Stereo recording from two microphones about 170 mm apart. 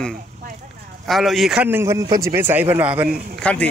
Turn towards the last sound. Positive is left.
turn(degrees=5)  # may be behind; listen again after turning